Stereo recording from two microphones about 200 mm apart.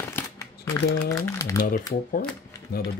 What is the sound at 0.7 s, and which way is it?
Speech, 15° left (ahead or behind).